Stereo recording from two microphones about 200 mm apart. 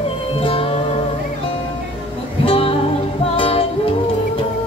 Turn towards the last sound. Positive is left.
turn(degrees=25)  # may be behind; listen again after turning